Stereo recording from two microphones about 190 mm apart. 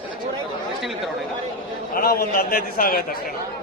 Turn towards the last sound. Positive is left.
turn(degrees=50)  # may be behind; listen again after turning